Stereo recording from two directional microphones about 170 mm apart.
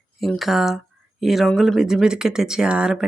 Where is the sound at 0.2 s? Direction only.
Centre (ahead or behind).